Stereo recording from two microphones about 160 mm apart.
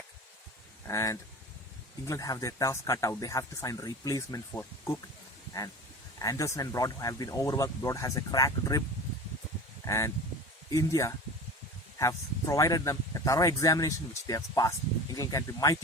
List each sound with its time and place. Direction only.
0.9 s speech: 20° left (ahead or behind)
6.1 s speech: 20° left (ahead or behind)
9.8 s speech: 20° left (ahead or behind)